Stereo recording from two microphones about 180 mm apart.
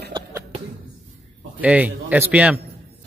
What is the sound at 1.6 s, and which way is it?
A man's voice, 10° right (ahead or behind).